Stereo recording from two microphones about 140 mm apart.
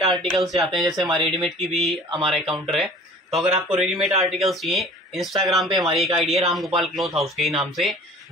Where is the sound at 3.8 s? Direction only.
Centre (ahead or behind).